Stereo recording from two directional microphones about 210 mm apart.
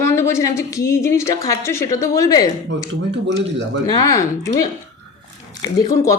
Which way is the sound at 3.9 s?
15° left (ahead or behind).